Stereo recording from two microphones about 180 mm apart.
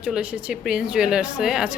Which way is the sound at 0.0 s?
5° right (ahead or behind).